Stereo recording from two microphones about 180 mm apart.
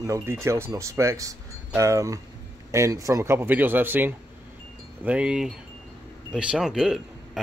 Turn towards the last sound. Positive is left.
turn(degrees=0)  # may be behind; listen again after turning